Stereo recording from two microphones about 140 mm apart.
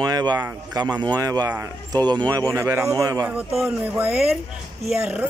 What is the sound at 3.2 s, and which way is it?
A man's voice, 5° right (ahead or behind).